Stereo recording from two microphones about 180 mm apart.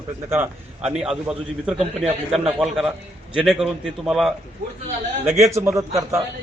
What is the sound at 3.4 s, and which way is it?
Speech, centre (ahead or behind).